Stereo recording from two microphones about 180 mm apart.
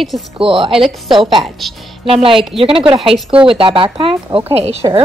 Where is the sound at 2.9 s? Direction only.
Centre (ahead or behind).